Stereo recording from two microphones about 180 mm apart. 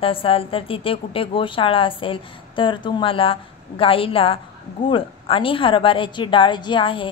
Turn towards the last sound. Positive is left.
turn(degrees=30)  # may be behind; listen again after turning